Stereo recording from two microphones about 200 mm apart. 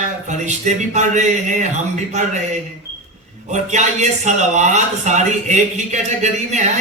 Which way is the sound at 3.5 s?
35° right (ahead or behind).